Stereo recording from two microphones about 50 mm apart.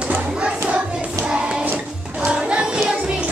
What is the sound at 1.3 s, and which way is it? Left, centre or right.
Music, centre.